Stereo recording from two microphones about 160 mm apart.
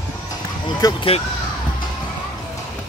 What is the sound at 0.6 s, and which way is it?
Speech, 30° left (ahead or behind).